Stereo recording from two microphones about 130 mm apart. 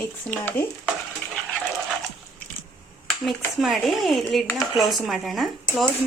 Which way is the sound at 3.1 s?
Centre (ahead or behind).